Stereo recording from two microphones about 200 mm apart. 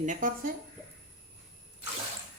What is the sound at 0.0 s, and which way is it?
Speech, 40° right (ahead or behind).